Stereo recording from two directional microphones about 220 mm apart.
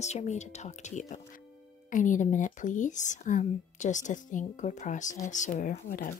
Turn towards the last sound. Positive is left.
turn(degrees=40)  # may be behind; listen again after turning